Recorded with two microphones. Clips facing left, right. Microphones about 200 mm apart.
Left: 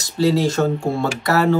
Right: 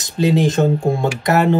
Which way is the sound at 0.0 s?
20° right (ahead or behind).